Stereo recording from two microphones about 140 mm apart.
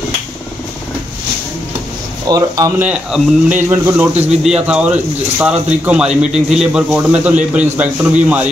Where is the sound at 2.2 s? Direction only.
25° right (ahead or behind).